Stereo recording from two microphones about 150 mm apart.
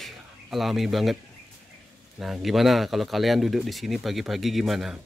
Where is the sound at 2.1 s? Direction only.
Centre (ahead or behind).